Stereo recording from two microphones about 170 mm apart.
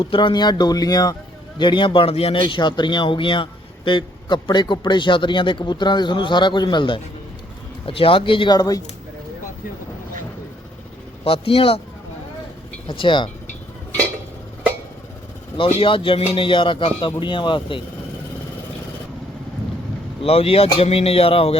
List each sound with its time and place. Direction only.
0.0 s a man's voice: 30° left (ahead or behind)
11.2 s speech: 35° left (ahead or behind)
12.9 s a man's voice: 30° left (ahead or behind)
15.5 s speech: 35° left (ahead or behind)
20.2 s speech: 35° left (ahead or behind)